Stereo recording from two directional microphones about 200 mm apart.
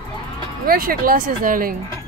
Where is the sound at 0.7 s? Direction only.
45° right (ahead or behind).